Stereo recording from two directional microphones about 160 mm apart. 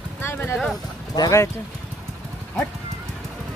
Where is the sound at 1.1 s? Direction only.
20° left (ahead or behind).